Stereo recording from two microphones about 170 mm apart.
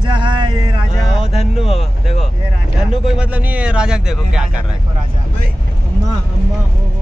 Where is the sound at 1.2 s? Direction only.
35° left (ahead or behind).